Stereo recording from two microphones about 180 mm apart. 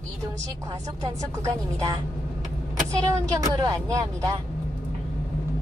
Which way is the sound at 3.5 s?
20° right (ahead or behind).